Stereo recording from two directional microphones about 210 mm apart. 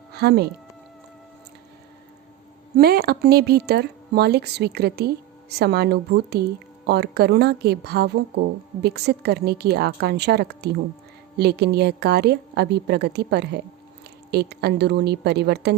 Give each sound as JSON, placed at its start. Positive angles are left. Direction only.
{"t": 0.1, "sound": "speech", "side_deg": -50}
{"t": 2.7, "sound": "speech", "side_deg": -45}